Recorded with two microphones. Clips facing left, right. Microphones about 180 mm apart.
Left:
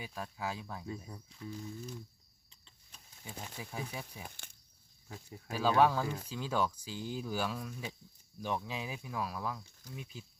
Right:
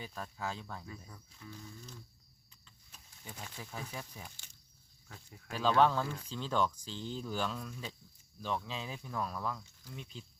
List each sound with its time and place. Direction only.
0.0 s speech: 10° left (ahead or behind)
0.9 s speech: 20° left (ahead or behind)
3.2 s speech: 10° left (ahead or behind)
4.4 s a sound: 60° left (ahead or behind)
5.5 s speech: 10° left (ahead or behind)